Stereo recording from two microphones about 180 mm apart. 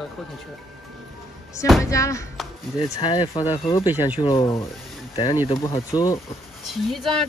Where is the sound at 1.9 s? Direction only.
15° left (ahead or behind).